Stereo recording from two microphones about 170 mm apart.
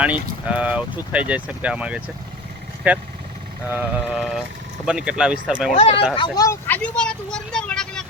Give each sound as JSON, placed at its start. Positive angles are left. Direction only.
{"t": 0.0, "sound": "speech", "side_deg": -10}
{"t": 5.7, "sound": "speech", "side_deg": 35}
{"t": 6.1, "sound": "speech", "side_deg": 25}
{"t": 6.7, "sound": "speech", "side_deg": 10}